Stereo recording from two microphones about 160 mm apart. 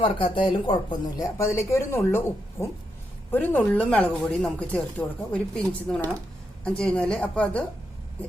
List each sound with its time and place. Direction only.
0.0 s speech: 35° left (ahead or behind); by 7.6 s 5° left (ahead or behind)